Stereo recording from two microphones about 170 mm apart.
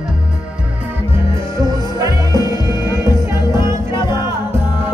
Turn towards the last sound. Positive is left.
turn(degrees=-15)  # may be behind; listen again after turning